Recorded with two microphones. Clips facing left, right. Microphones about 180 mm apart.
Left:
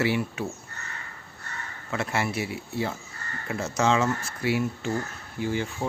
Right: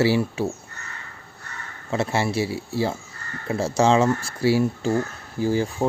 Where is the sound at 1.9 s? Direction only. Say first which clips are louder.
Right 5 dB; 30° right (ahead or behind).